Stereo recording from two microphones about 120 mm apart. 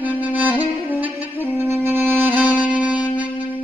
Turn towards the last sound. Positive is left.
turn(degrees=-10)  # may be behind; listen again after turning